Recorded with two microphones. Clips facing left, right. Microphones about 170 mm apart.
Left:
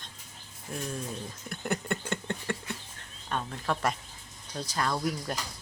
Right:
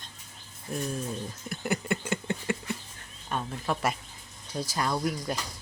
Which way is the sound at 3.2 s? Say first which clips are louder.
Right 1 dB; 5° right (ahead or behind).